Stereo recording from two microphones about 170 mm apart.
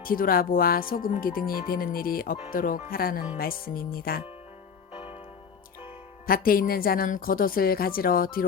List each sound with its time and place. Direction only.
0.0 s speech: 55° left (ahead or behind)
6.2 s speech: 60° left (ahead or behind)